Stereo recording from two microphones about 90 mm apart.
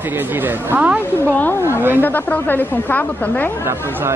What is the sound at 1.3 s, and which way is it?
A woman's voice, 20° left (ahead or behind).